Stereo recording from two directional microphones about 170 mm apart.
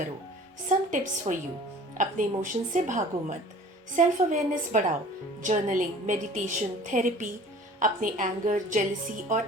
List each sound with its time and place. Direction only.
0.7 s a woman's voice: 45° right (ahead or behind)